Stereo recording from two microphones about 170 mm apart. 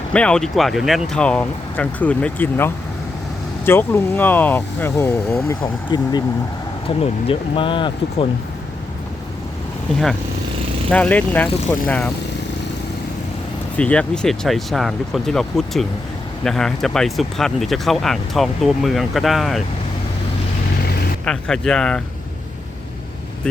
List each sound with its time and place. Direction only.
0.1 s speech: 5° left (ahead or behind)
5.9 s speech: 25° left (ahead or behind)
10.8 s speech: 10° left (ahead or behind)
13.7 s speech: 5° left (ahead or behind)
21.2 s speech: 5° left (ahead or behind)